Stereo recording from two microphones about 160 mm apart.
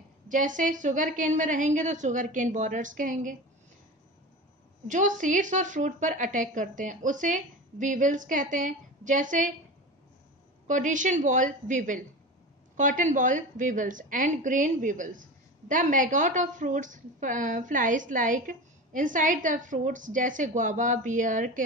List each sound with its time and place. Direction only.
0.3 s a woman's voice: 55° right (ahead or behind)
4.8 s a woman's voice: 55° right (ahead or behind)
10.7 s a woman's voice: 50° right (ahead or behind)